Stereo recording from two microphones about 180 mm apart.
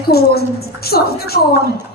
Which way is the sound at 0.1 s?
60° left (ahead or behind).